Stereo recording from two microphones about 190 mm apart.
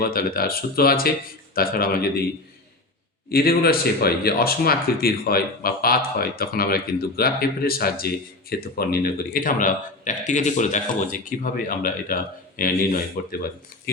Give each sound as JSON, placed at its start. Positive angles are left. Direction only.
{"t": 0.0, "sound": "speech", "side_deg": 50}
{"t": 3.2, "sound": "speech", "side_deg": 55}